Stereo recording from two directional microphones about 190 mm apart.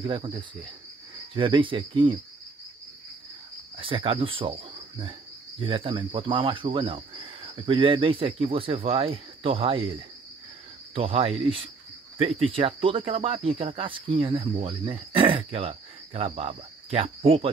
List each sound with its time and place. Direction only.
0.0 s speech: 25° right (ahead or behind)
3.7 s cricket: 25° right (ahead or behind)
5.6 s speech: 25° right (ahead or behind)